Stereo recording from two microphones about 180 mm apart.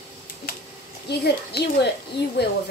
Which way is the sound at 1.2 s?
65° left (ahead or behind).